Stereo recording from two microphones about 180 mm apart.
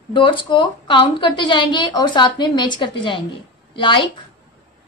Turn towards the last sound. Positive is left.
turn(degrees=25)  # may be behind; listen again after turning